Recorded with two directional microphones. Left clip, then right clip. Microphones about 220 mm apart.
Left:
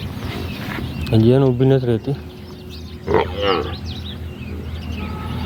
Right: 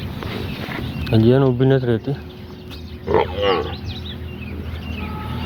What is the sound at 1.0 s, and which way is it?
Speech, 10° left (ahead or behind).